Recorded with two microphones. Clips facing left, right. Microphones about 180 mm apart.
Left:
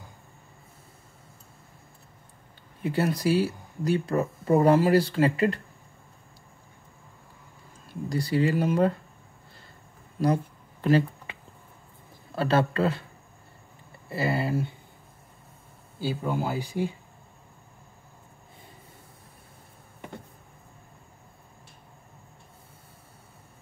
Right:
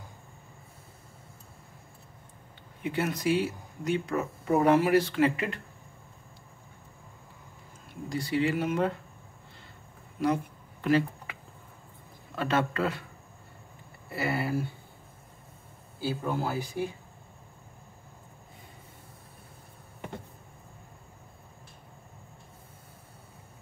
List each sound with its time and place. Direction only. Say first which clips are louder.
2.8 s speech: left 4 dB; 35° left (ahead or behind)
8.1 s speech: left 3 dB; 35° left (ahead or behind)
10.2 s a sound: left 2 dB; 35° left (ahead or behind)
12.4 s speech: left 4 dB; 35° left (ahead or behind)
14.0 s speech: left 3 dB; 25° left (ahead or behind)
16.0 s speech: left 2 dB; 15° left (ahead or behind)